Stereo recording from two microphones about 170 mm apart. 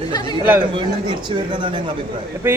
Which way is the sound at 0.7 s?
30° right (ahead or behind).